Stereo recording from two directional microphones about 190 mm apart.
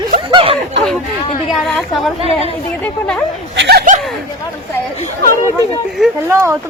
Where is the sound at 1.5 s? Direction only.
Centre (ahead or behind).